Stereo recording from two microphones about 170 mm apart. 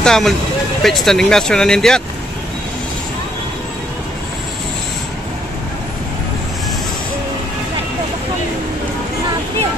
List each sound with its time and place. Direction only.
0.0 s speech: centre (ahead or behind)